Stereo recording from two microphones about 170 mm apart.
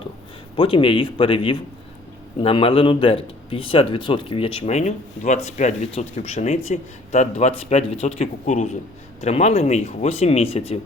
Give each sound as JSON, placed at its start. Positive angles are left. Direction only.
{"t": 0.5, "sound": "a man's voice", "side_deg": 30}